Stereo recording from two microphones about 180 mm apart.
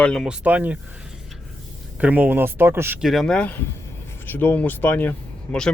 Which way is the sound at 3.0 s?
Centre (ahead or behind).